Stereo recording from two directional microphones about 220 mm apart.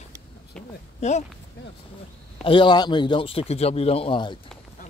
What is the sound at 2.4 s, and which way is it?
Speech, 20° left (ahead or behind).